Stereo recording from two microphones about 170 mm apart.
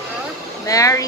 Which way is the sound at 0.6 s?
20° left (ahead or behind).